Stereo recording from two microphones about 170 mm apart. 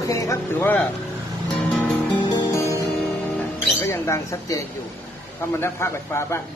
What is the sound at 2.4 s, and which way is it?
Music, 20° left (ahead or behind).